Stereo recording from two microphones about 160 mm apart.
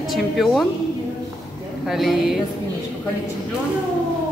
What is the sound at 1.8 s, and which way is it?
Speech, centre (ahead or behind).